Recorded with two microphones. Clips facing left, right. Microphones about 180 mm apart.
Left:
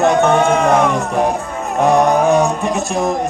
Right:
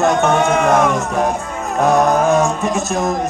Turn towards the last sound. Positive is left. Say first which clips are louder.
# left 1 dB
turn(degrees=0)  # may be behind; listen again after turning